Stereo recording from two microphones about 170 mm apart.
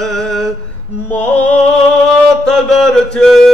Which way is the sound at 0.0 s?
5° left (ahead or behind).